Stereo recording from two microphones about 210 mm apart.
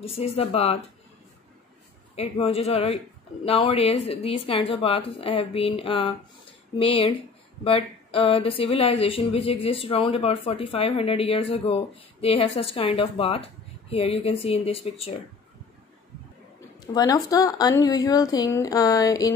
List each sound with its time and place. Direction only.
0.0 s speech: 30° left (ahead or behind)
2.1 s speech: 25° left (ahead or behind)
16.8 s a sound: 15° left (ahead or behind)